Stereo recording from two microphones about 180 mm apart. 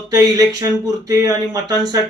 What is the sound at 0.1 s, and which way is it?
Speech, 20° right (ahead or behind).